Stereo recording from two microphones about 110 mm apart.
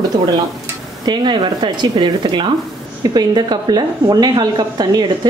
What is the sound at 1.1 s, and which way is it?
A woman's voice, 45° right (ahead or behind).